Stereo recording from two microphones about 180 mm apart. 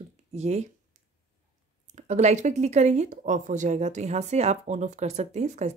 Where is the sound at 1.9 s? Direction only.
40° right (ahead or behind).